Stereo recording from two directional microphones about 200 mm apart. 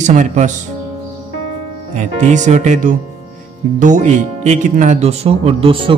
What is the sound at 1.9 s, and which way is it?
Speech, 40° right (ahead or behind).